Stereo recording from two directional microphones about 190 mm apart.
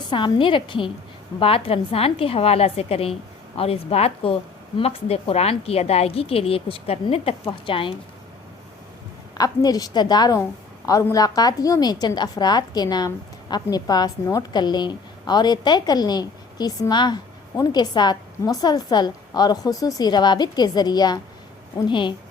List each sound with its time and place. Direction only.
0.1 s a woman's voice: 25° left (ahead or behind)
9.4 s a woman's voice: 20° left (ahead or behind)